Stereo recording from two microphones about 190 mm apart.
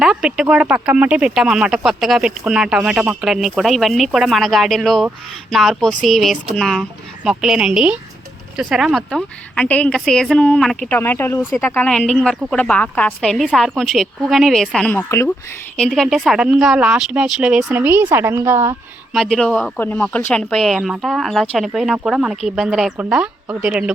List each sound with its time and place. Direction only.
0.0 s speech: 5° right (ahead or behind)
19.1 s speech: centre (ahead or behind)